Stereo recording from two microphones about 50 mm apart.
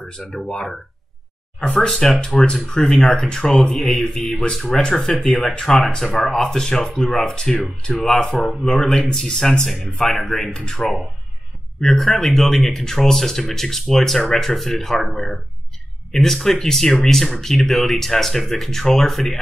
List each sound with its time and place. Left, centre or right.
0.5 s speech: centre
1.8 s speech: centre